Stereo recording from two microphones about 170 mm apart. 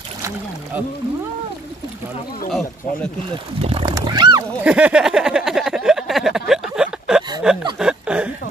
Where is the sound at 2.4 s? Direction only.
Centre (ahead or behind).